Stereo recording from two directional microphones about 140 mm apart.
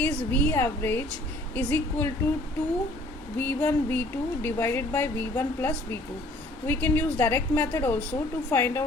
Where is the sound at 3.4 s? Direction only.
10° left (ahead or behind).